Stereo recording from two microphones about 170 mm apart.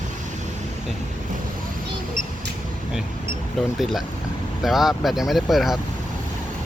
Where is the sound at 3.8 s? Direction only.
Centre (ahead or behind).